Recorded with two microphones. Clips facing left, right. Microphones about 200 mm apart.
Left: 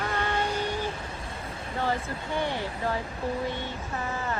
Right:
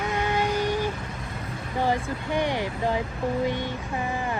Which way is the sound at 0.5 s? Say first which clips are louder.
Right 5 dB; 10° right (ahead or behind).